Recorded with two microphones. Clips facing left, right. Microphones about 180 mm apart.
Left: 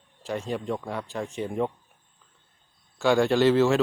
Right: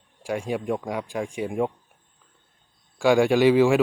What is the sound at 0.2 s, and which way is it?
Speech, 10° right (ahead or behind).